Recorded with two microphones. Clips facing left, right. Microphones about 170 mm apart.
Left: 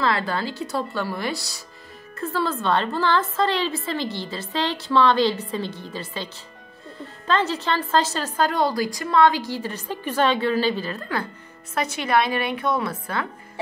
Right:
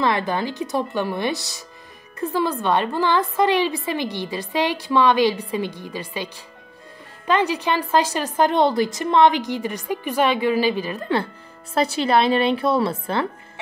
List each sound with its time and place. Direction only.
0.0 s a woman's voice: 20° right (ahead or behind)
11.7 s speech: 30° right (ahead or behind)